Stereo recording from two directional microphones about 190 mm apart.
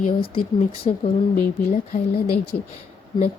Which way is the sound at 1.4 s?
45° left (ahead or behind).